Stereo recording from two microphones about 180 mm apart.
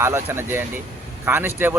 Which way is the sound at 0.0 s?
15° right (ahead or behind).